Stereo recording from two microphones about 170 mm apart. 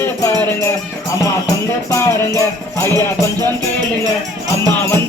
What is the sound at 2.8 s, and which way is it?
Music, 15° left (ahead or behind).